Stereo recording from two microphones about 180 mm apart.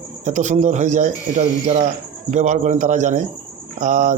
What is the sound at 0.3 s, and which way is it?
A man's voice, 40° right (ahead or behind).